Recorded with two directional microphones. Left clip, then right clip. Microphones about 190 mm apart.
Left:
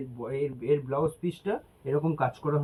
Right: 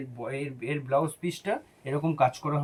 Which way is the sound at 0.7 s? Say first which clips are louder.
Even; 45° right (ahead or behind).